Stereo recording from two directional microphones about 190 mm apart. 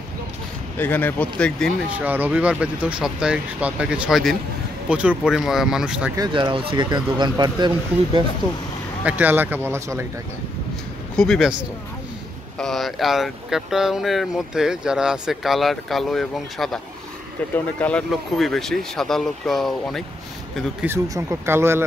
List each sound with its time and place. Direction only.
0.7 s speech: 10° left (ahead or behind)
2.0 s speech: 10° right (ahead or behind)
6.1 s speech: 25° right (ahead or behind)
9.2 s speech: 10° right (ahead or behind)
11.1 s speech: centre (ahead or behind)
12.5 s speech: centre (ahead or behind)
20.8 s speech: 15° right (ahead or behind)